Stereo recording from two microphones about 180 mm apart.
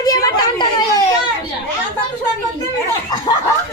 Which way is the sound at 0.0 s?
20° left (ahead or behind).